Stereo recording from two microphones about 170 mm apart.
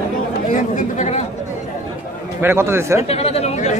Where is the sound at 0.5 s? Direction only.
50° left (ahead or behind).